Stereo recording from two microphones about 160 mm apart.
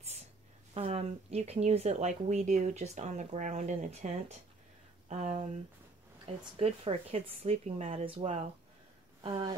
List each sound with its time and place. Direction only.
0.7 s speech: 40° right (ahead or behind)